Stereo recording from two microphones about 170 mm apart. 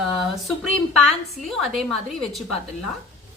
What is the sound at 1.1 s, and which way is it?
A woman's voice, centre (ahead or behind).